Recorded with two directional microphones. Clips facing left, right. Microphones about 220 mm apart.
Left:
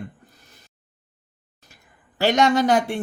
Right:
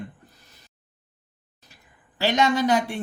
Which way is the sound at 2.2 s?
45° left (ahead or behind).